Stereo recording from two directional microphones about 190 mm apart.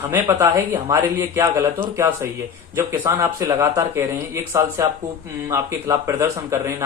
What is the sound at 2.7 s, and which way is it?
Speech, 10° right (ahead or behind).